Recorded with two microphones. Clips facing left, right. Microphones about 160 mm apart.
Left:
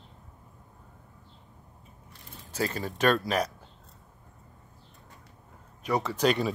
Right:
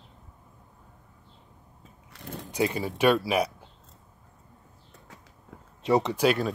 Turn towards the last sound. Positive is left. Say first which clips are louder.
# right 1 dB
turn(degrees=-5)  # may be behind; listen again after turning